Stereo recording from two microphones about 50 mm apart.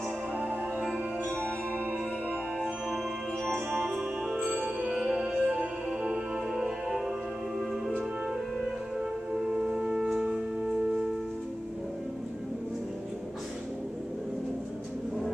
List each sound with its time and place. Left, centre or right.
0.4 s music: right
4.4 s music: right
9.5 s music: centre